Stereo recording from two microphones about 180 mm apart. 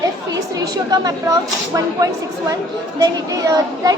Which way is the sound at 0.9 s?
20° right (ahead or behind).